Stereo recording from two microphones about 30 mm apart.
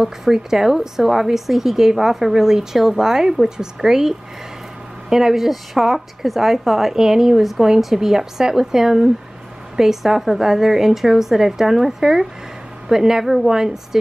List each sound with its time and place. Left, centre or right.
0.0 s a woman's voice: centre
5.1 s a woman's voice: centre
5.4 s a woman's voice: centre
7.0 s a woman's voice: centre
13.2 s a woman's voice: centre